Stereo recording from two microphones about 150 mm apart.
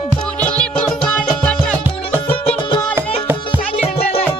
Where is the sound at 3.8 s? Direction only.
40° left (ahead or behind).